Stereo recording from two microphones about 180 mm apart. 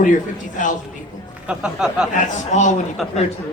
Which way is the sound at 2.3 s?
45° left (ahead or behind).